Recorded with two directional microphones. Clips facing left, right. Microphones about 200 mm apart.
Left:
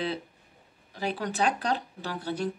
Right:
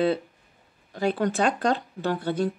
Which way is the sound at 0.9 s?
50° right (ahead or behind).